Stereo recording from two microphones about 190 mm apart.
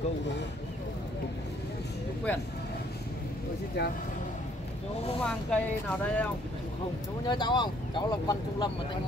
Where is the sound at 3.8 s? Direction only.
60° left (ahead or behind).